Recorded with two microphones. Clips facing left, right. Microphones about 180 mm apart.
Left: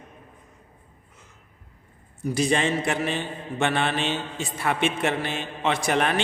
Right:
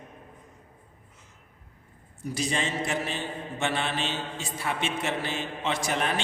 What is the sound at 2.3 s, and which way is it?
A man's voice, 60° left (ahead or behind).